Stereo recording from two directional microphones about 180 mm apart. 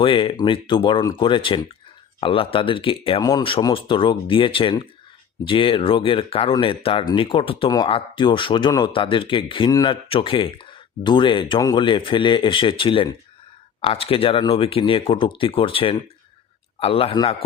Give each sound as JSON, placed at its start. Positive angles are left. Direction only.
{"t": 0.0, "sound": "speech", "side_deg": 30}